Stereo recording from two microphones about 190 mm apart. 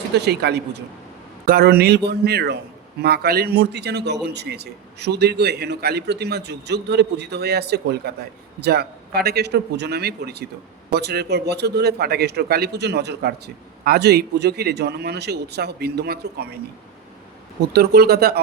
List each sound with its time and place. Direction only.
0.1 s a man's voice: 60° right (ahead or behind)
17.7 s a man's voice: 55° right (ahead or behind)